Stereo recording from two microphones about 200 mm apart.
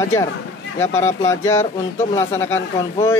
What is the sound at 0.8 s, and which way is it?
Speech, 10° left (ahead or behind).